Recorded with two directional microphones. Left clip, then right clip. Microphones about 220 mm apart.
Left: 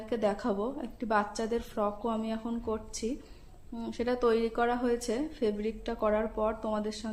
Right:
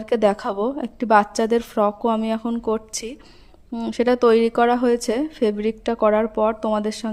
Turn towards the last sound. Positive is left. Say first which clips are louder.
# right 11 dB
turn(degrees=-45)  # may be behind; listen again after turning